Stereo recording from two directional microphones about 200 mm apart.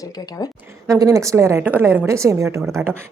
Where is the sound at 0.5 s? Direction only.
10° right (ahead or behind).